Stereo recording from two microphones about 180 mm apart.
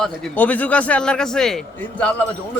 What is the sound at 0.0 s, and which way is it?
Speech, 5° left (ahead or behind).